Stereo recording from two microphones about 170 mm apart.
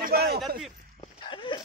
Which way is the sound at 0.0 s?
65° right (ahead or behind).